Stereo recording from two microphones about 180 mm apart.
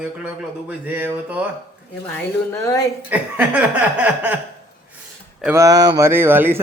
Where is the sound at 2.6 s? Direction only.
20° left (ahead or behind).